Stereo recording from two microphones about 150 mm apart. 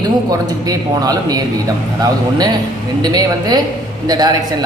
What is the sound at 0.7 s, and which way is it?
A woman's voice, 25° right (ahead or behind).